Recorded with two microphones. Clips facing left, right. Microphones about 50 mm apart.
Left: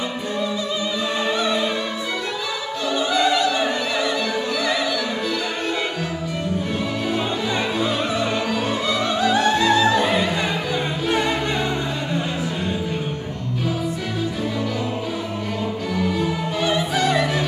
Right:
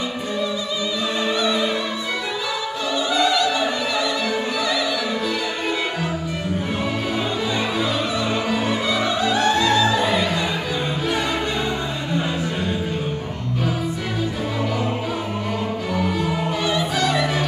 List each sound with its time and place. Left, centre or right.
1.3 s opera: left
2.9 s opera: left
3.5 s opera: centre
8.3 s opera: centre
9.2 s music: centre
16.6 s music: left